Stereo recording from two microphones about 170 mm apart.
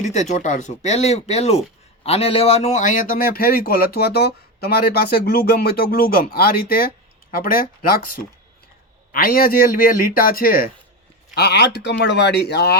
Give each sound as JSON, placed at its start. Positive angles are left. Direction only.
{"t": 0.0, "sound": "a man's voice", "side_deg": 40}
{"t": 11.3, "sound": "speech", "side_deg": 80}